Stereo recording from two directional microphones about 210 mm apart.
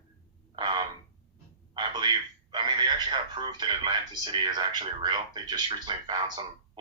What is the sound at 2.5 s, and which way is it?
Speech, 20° right (ahead or behind).